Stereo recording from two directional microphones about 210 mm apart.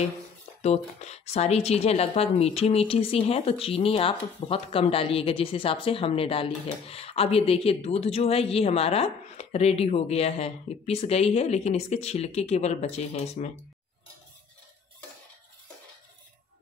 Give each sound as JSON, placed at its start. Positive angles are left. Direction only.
{"t": 0.6, "sound": "speech", "side_deg": 30}